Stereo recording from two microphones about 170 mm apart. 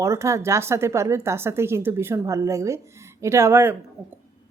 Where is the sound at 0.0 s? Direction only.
15° right (ahead or behind).